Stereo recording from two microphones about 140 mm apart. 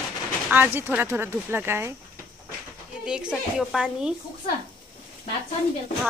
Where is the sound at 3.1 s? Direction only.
5° right (ahead or behind).